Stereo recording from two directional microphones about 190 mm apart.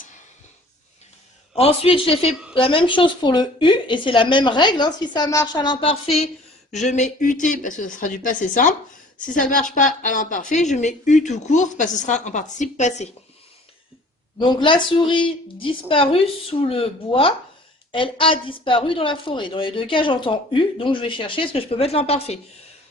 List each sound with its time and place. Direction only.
1.5 s a woman's voice: 30° left (ahead or behind)
14.3 s a woman's voice: 25° left (ahead or behind)